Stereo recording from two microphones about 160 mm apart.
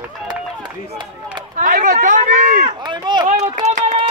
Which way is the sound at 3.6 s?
45° right (ahead or behind).